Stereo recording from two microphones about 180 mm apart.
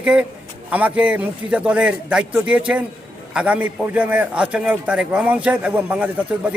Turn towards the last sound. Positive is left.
turn(degrees=-10)  # may be behind; listen again after turning